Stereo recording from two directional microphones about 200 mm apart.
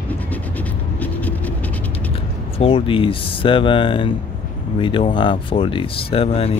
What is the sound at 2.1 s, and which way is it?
Speech, 30° left (ahead or behind).